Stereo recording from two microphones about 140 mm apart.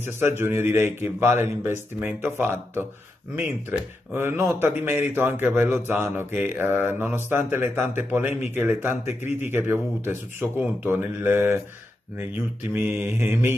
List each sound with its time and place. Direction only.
0.0 s speech: 15° right (ahead or behind)
12.7 s speech: 15° right (ahead or behind)